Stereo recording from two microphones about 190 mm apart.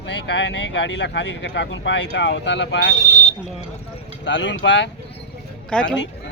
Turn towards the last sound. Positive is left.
turn(degrees=5)  # may be behind; listen again after turning